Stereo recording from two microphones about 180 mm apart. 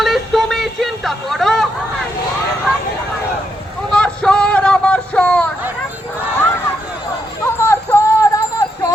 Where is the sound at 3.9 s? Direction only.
5° left (ahead or behind).